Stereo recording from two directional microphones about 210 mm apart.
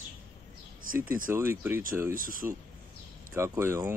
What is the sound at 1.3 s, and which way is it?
Speech, 10° right (ahead or behind).